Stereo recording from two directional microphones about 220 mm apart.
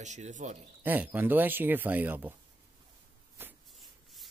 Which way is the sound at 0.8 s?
10° right (ahead or behind).